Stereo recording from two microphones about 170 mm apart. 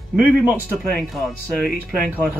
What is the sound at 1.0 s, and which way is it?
Speech, centre (ahead or behind).